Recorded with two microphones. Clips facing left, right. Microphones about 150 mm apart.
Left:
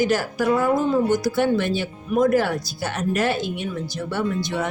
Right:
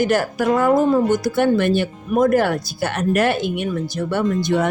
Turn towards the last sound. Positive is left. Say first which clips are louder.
# right 5 dB
turn(degrees=-50)  # may be behind; listen again after turning